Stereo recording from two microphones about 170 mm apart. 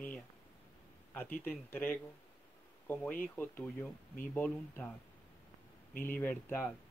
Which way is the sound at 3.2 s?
10° left (ahead or behind).